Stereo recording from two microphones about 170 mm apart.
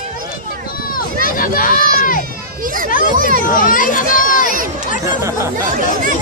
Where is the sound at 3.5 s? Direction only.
50° left (ahead or behind).